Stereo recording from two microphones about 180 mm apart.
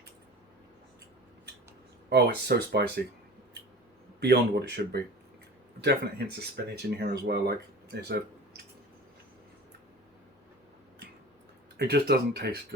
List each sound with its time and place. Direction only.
2.0 s speech: 65° right (ahead or behind)
4.2 s speech: 70° right (ahead or behind)
11.8 s speech: 65° right (ahead or behind)